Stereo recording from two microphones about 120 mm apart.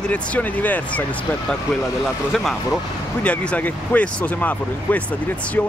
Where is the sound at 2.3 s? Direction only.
Centre (ahead or behind).